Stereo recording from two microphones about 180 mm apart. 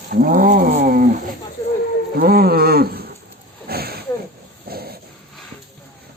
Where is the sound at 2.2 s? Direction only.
60° right (ahead or behind).